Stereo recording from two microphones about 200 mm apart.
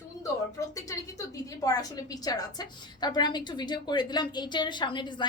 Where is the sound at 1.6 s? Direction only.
20° left (ahead or behind).